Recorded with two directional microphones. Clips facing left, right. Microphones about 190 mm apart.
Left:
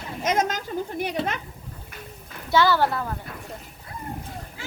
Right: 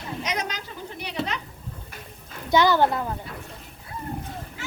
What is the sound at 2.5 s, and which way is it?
Speech, 20° right (ahead or behind).